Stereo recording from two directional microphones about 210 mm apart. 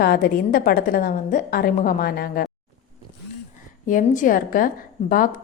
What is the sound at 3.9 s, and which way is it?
A woman's voice, 40° left (ahead or behind).